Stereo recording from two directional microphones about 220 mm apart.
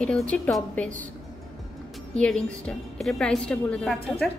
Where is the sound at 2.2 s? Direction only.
5° left (ahead or behind).